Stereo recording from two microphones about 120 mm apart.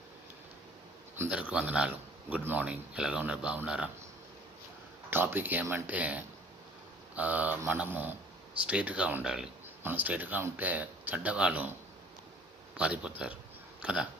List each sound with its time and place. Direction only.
1.3 s speech: 10° right (ahead or behind)
5.1 s speech: 15° right (ahead or behind)
12.7 s speech: 10° right (ahead or behind)